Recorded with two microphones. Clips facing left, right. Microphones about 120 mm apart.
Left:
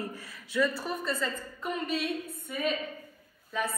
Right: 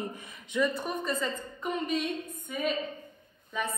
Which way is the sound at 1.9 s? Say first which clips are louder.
Even; 5° left (ahead or behind).